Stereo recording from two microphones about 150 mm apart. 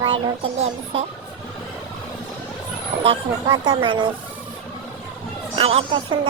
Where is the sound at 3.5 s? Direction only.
30° right (ahead or behind).